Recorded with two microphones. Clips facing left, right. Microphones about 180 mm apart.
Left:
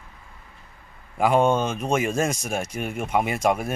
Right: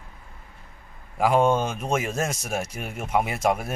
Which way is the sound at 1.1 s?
Centre (ahead or behind).